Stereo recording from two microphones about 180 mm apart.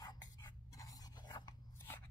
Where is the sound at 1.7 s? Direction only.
10° left (ahead or behind).